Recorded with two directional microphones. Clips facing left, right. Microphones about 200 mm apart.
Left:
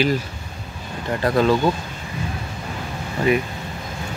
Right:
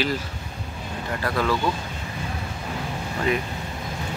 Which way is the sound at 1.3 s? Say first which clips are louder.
Left 7 dB; 25° left (ahead or behind).